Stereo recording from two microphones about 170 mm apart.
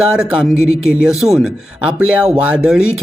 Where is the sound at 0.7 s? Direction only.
65° left (ahead or behind).